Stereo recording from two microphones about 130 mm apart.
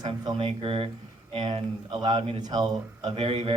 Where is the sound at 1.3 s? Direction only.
35° right (ahead or behind).